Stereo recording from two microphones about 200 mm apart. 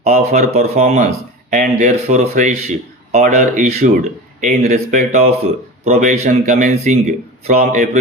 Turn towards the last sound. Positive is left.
turn(degrees=-35)  # may be behind; listen again after turning